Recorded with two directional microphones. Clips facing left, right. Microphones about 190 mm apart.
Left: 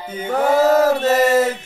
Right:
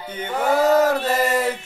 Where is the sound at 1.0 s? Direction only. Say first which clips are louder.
Left 6 dB; 45° left (ahead or behind).